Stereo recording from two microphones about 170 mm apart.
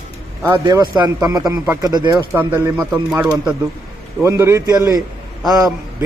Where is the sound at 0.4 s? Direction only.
20° right (ahead or behind).